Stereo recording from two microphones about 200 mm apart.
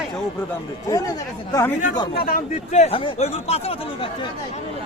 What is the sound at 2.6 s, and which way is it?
Speech, 35° left (ahead or behind).